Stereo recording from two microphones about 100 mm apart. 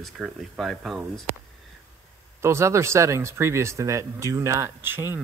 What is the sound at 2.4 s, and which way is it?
Speech, 30° right (ahead or behind).